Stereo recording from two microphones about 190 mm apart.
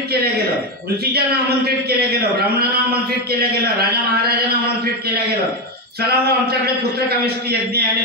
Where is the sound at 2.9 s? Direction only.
55° right (ahead or behind).